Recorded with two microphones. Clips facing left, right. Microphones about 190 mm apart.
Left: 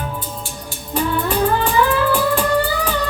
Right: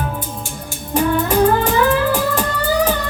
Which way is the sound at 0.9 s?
45° right (ahead or behind).